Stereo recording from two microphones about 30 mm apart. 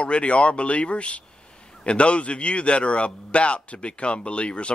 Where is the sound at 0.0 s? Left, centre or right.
Left.